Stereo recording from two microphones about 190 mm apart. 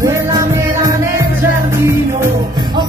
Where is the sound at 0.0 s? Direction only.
15° right (ahead or behind).